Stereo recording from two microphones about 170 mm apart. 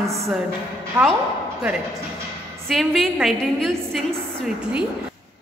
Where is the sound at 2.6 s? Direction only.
Centre (ahead or behind).